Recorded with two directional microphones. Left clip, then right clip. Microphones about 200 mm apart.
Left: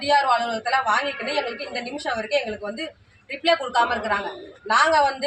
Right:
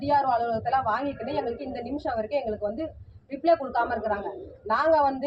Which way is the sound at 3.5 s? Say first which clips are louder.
Left 3 dB; 30° left (ahead or behind).